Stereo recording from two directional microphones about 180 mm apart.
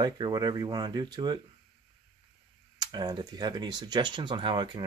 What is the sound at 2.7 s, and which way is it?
Speech, 20° right (ahead or behind).